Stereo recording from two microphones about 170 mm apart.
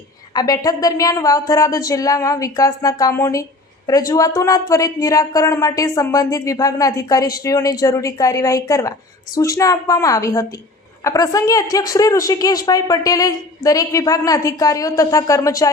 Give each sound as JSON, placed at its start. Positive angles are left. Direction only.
{"t": 0.3, "sound": "speech", "side_deg": 20}